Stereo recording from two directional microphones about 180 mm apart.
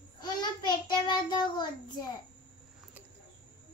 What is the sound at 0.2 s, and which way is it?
Child singing, 25° left (ahead or behind).